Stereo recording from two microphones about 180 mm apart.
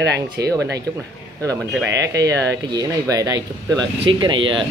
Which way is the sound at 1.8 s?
75° right (ahead or behind).